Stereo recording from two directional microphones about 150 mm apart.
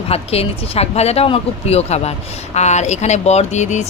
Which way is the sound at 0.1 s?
40° left (ahead or behind).